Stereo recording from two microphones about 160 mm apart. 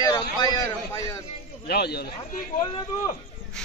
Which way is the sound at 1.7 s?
90° left.